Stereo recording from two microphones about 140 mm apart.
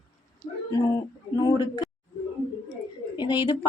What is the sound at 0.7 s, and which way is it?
A woman's voice, 25° left (ahead or behind).